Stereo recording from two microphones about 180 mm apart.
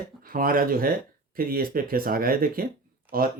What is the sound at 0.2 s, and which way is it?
Speech, 50° right (ahead or behind).